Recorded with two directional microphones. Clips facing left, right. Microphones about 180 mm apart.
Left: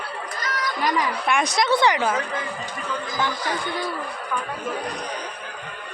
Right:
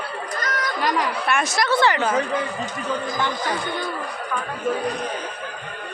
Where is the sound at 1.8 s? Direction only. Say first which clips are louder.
Right 2 dB; 15° left (ahead or behind).